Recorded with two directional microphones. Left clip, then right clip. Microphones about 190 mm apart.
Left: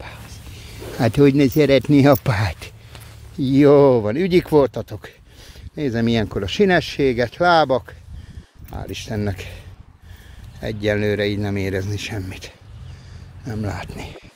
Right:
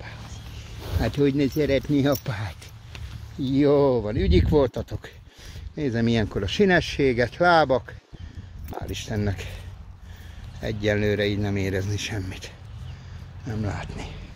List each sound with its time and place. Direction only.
0.0 s a sound: 30° left (ahead or behind)
0.9 s speech: 40° left (ahead or behind)
3.3 s speech: 45° left (ahead or behind); by 7.9 s 20° left (ahead or behind)
8.6 s speech: 30° left (ahead or behind)
10.6 s speech: 30° left (ahead or behind)